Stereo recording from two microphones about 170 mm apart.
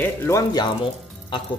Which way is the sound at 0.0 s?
10° left (ahead or behind).